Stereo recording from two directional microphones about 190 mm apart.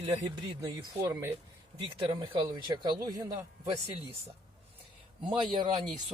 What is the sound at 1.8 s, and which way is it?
Speech, 30° right (ahead or behind).